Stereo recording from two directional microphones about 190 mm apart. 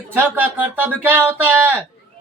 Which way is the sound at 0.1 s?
10° right (ahead or behind).